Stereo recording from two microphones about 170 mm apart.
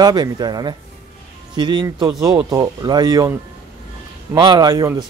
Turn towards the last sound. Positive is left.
turn(degrees=-20)  # may be behind; listen again after turning